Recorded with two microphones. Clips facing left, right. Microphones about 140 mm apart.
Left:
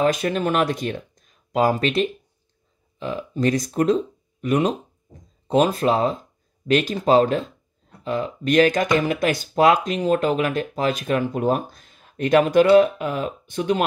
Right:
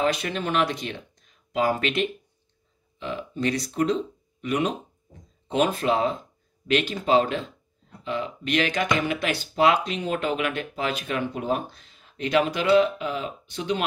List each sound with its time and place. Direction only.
0.0 s speech: 45° left (ahead or behind)